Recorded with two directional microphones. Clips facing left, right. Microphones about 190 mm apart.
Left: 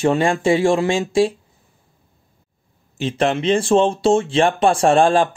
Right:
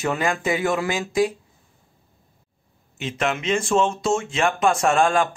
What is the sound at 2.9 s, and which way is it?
Speech, 30° left (ahead or behind).